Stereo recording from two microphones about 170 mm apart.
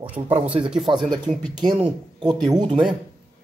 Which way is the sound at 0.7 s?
Centre (ahead or behind).